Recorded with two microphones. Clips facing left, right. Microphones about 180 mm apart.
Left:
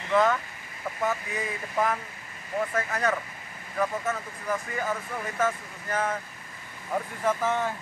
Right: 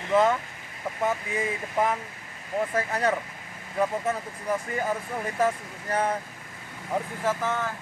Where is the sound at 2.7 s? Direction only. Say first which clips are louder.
Right 2 dB; 30° right (ahead or behind).